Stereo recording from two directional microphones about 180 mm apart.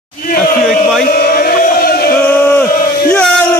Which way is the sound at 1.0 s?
55° left (ahead or behind).